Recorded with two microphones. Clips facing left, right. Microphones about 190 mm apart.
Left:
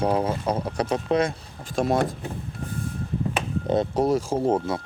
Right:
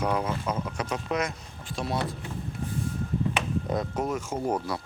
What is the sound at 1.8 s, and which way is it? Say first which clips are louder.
Speech: left 8 dB; 50° left (ahead or behind).